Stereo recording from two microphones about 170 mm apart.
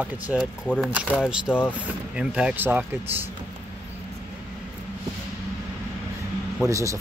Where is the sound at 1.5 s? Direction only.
10° left (ahead or behind).